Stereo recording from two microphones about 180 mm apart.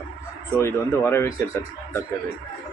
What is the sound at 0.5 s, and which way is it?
Speech, 15° left (ahead or behind).